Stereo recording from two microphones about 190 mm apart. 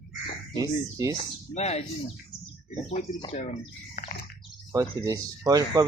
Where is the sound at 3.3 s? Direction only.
40° left (ahead or behind).